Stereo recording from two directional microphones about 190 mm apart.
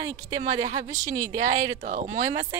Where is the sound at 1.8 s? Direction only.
45° right (ahead or behind).